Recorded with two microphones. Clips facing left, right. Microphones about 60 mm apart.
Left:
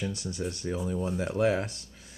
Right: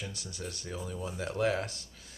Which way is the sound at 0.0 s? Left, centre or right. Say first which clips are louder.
Left 8 dB; left.